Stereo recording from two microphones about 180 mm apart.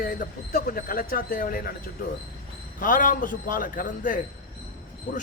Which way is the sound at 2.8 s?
50° left (ahead or behind).